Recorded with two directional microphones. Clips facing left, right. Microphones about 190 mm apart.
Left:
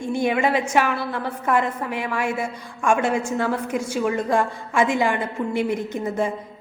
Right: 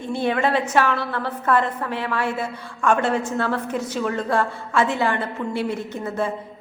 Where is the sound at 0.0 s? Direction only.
15° left (ahead or behind).